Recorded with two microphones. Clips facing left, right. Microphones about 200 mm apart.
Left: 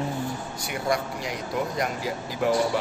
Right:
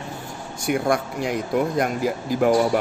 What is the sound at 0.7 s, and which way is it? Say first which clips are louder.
Speech: right 6 dB; 55° right (ahead or behind).